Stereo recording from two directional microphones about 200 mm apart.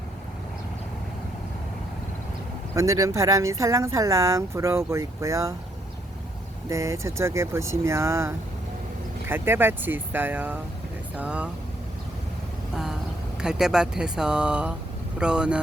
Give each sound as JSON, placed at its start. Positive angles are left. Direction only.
{"t": 2.7, "sound": "speech", "side_deg": -15}
{"t": 6.7, "sound": "speech", "side_deg": -15}
{"t": 13.4, "sound": "speech", "side_deg": -5}